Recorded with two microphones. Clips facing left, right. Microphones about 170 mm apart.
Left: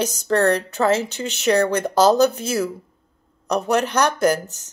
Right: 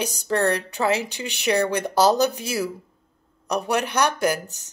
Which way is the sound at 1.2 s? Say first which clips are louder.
Left 4 dB; 45° left (ahead or behind).